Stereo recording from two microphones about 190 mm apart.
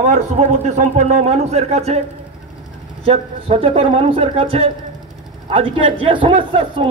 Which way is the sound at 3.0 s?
30° right (ahead or behind).